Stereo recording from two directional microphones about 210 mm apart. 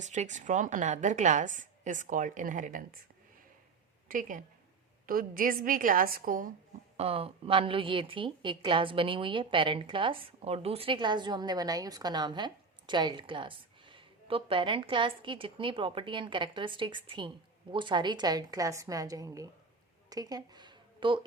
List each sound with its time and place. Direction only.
0.0 s a woman's voice: 35° right (ahead or behind)
4.1 s a woman's voice: 40° right (ahead or behind)
6.9 s a woman's voice: 30° right (ahead or behind)
20.1 s a sound: 15° right (ahead or behind)